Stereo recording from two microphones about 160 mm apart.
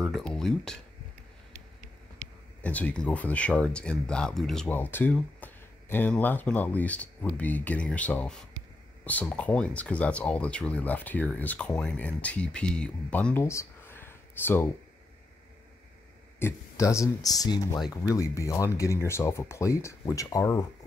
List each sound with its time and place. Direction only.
0.0 s speech: 5° left (ahead or behind)
2.6 s speech: 10° left (ahead or behind)
16.3 s speech: 15° left (ahead or behind)